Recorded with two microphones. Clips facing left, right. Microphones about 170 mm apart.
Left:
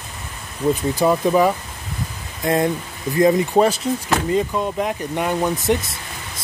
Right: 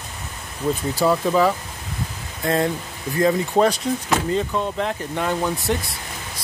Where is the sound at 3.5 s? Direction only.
5° left (ahead or behind).